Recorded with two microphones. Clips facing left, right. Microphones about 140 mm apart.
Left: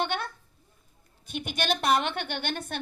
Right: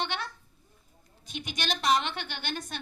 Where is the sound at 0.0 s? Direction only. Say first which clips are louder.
Left 4 dB; 50° left (ahead or behind).